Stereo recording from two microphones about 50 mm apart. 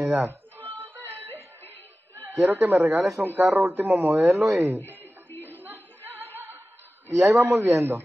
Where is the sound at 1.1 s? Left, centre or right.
Right.